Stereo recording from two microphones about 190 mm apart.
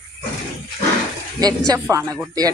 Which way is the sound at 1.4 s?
20° right (ahead or behind).